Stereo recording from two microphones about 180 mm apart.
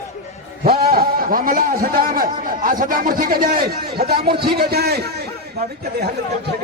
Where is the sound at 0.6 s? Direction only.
55° right (ahead or behind).